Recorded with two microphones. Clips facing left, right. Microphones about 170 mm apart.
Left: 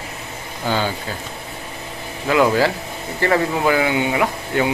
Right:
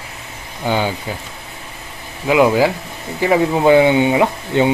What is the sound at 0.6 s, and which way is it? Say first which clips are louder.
Speech: right 3 dB; 15° right (ahead or behind).